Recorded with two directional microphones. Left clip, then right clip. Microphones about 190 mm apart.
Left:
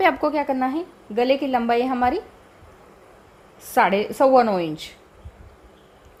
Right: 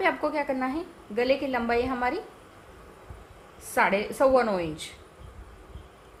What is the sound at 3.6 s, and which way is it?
A woman's voice, 40° left (ahead or behind).